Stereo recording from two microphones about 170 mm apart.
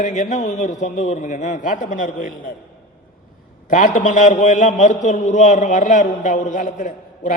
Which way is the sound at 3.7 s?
50° left (ahead or behind).